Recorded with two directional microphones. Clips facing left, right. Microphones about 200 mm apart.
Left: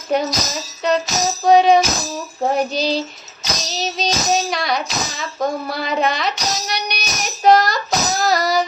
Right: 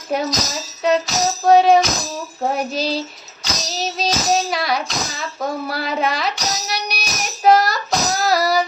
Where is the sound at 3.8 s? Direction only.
5° right (ahead or behind).